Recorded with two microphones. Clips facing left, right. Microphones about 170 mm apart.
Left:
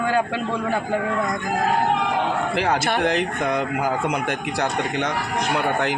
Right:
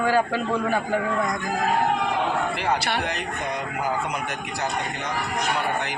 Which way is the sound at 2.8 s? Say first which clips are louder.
Left 4 dB; 50° left (ahead or behind).